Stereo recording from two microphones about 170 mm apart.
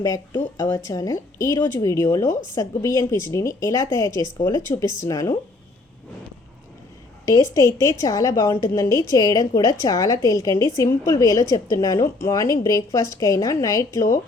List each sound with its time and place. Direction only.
0.5 s a woman's voice: 20° left (ahead or behind)
7.3 s a woman's voice: 20° left (ahead or behind)